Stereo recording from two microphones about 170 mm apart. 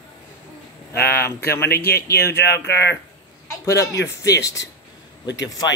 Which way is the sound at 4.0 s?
90° left.